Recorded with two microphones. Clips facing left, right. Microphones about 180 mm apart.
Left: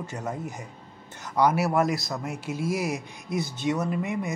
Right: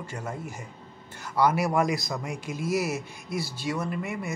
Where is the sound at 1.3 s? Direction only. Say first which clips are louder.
Left 1 dB; 10° left (ahead or behind).